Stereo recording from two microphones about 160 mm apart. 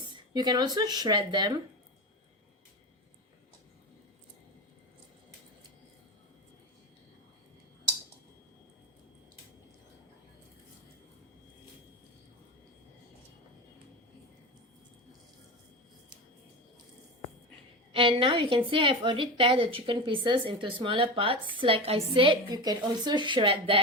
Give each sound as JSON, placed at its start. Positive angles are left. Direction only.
{"t": 0.0, "sound": "speech", "side_deg": -25}
{"t": 17.9, "sound": "a woman's voice", "side_deg": -35}